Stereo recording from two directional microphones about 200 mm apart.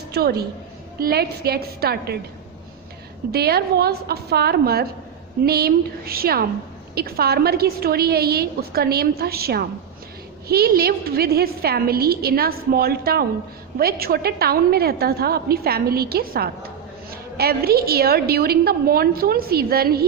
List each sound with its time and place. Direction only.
0.1 s a woman's voice: 50° right (ahead or behind)
3.3 s a woman's voice: 50° right (ahead or behind)